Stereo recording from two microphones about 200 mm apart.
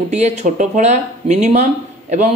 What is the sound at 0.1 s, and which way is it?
Speech, 35° right (ahead or behind).